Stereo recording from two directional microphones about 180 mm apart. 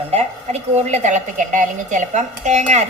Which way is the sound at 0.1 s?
35° right (ahead or behind).